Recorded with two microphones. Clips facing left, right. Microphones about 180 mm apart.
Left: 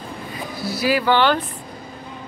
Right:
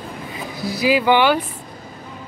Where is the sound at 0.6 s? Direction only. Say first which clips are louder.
Right 2 dB; 15° right (ahead or behind).